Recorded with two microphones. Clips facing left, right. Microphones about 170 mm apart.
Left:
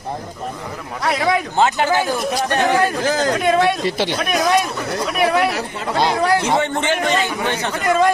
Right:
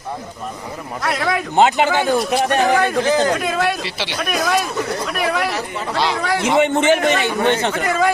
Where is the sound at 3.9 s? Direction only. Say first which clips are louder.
Left 6 dB; 50° left (ahead or behind).